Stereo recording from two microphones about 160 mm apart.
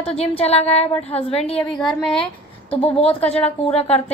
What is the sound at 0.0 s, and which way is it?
A woman's voice, 40° left (ahead or behind).